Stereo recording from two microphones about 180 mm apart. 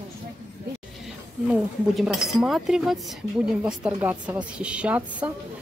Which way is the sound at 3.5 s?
5° right (ahead or behind).